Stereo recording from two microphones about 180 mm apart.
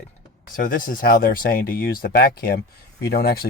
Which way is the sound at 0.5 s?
50° left (ahead or behind).